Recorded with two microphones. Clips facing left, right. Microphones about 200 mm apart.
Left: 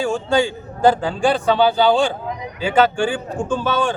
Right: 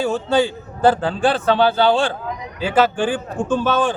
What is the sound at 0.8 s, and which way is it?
A man's voice, centre (ahead or behind).